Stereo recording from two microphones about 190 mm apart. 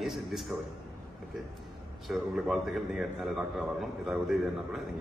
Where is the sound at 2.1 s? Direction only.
Centre (ahead or behind).